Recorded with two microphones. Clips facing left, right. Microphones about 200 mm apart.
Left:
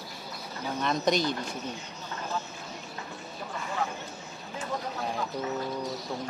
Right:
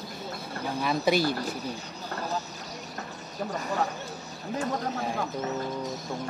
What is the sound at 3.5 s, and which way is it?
Speech, 40° right (ahead or behind).